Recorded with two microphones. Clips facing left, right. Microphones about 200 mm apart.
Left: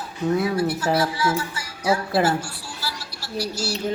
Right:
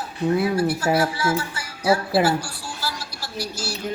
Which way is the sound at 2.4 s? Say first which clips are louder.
Right 2 dB; 50° right (ahead or behind).